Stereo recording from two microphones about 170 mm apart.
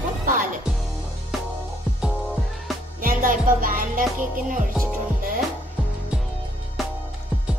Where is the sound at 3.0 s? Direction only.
55° right (ahead or behind).